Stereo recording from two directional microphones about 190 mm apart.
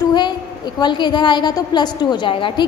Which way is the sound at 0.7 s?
25° left (ahead or behind).